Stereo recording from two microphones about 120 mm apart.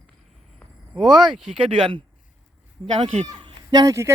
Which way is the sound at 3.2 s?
35° right (ahead or behind).